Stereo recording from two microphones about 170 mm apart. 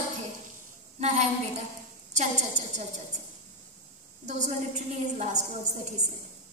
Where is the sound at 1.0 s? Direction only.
45° right (ahead or behind).